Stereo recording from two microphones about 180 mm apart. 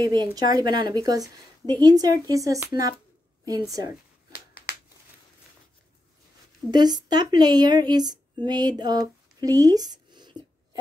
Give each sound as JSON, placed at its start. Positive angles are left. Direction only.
{"t": 0.0, "sound": "a woman's voice", "side_deg": -20}
{"t": 6.7, "sound": "a woman's voice", "side_deg": -25}
{"t": 8.5, "sound": "a sound", "side_deg": -20}